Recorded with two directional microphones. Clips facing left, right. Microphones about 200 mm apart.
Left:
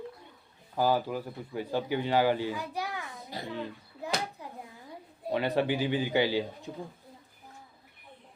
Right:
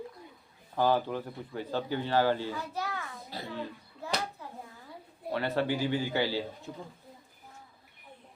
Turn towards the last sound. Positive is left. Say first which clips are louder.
# left 3 dB
turn(degrees=15)  # may be behind; listen again after turning